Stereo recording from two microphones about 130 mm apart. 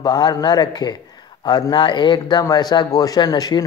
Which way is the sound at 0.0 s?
30° left (ahead or behind).